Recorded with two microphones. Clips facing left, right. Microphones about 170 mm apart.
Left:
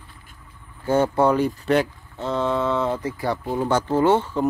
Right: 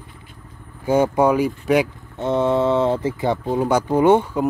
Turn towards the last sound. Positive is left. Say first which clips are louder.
# right 3 dB
turn(degrees=-10)  # may be behind; listen again after turning